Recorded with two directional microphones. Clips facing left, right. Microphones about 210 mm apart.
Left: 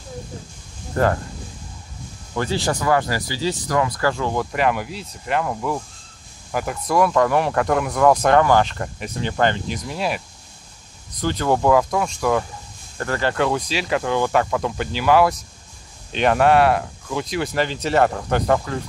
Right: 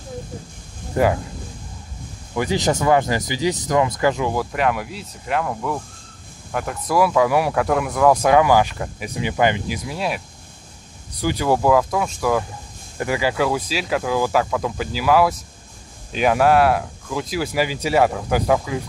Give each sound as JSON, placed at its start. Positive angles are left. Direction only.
{"t": 1.0, "sound": "speech", "side_deg": -15}
{"t": 2.3, "sound": "speech", "side_deg": -15}
{"t": 4.3, "sound": "speech", "side_deg": 0}
{"t": 12.9, "sound": "speech", "side_deg": -10}